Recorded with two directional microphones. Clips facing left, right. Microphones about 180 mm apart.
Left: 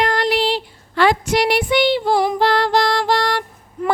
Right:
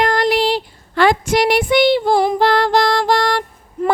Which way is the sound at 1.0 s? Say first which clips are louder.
Right 2 dB; 45° right (ahead or behind).